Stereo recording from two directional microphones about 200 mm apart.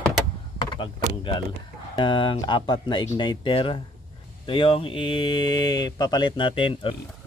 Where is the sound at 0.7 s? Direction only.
25° left (ahead or behind).